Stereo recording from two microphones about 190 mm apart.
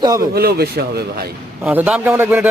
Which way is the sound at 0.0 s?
20° right (ahead or behind).